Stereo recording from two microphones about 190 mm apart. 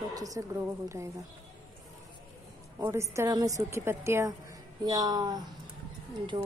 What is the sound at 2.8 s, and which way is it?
A woman's voice, 15° right (ahead or behind).